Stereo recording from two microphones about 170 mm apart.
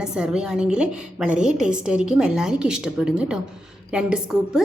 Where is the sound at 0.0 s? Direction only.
5° right (ahead or behind).